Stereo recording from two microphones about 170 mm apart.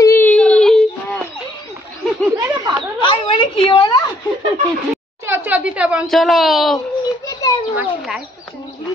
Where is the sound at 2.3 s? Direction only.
25° right (ahead or behind).